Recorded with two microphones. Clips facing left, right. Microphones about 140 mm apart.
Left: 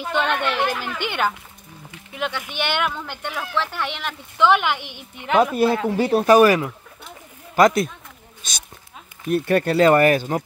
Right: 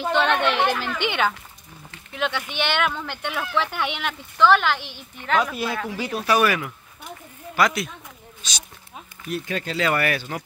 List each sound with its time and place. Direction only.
0.1 s speech: 5° left (ahead or behind)
4.4 s speech: 15° left (ahead or behind)
4.7 s speech: 60° left (ahead or behind)
5.1 s speech: 20° left (ahead or behind)
5.4 s speech: 35° left (ahead or behind)
5.9 s speech: 50° left (ahead or behind)
9.8 s speech: 40° left (ahead or behind)